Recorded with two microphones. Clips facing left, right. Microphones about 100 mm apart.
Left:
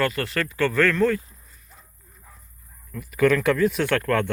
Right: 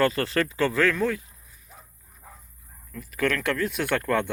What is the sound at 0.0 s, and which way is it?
Speech, 30° right (ahead or behind).